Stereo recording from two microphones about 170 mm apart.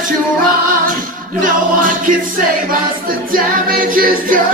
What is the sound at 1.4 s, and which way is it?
Music, 50° right (ahead or behind).